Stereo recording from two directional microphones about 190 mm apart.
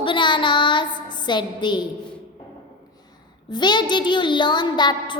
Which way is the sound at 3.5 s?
25° left (ahead or behind).